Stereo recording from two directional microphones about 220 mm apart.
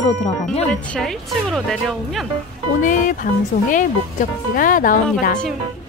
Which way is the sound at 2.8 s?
35° left (ahead or behind).